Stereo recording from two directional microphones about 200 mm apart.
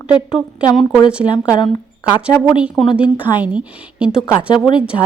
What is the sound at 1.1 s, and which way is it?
Speech, 5° right (ahead or behind).